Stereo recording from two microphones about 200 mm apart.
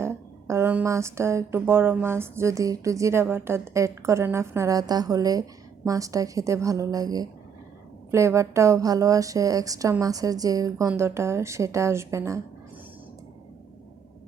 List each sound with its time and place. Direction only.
0.0 s a woman's voice: 15° right (ahead or behind)